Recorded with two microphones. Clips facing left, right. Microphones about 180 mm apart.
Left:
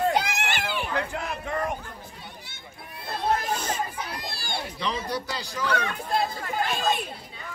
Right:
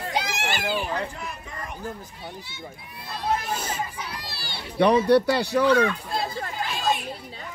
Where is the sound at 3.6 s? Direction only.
50° left (ahead or behind).